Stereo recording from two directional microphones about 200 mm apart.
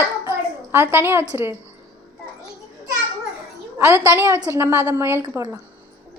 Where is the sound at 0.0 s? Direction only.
10° right (ahead or behind).